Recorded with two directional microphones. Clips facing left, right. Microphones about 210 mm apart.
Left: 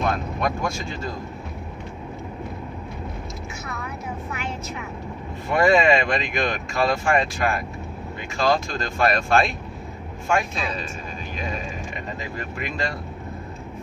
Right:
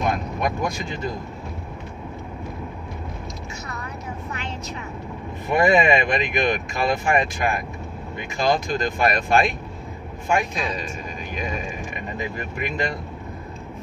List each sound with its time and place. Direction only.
0.0 s speech: 15° right (ahead or behind)
5.5 s speech: 20° right (ahead or behind)
12.2 s speech: 20° right (ahead or behind)